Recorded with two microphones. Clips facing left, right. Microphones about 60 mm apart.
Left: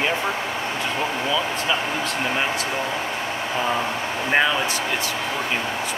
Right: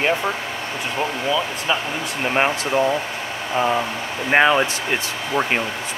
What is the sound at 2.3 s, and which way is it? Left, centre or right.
Speech, right.